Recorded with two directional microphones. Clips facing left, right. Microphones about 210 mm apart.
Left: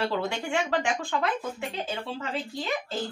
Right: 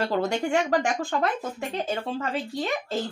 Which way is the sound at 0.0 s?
45° right (ahead or behind).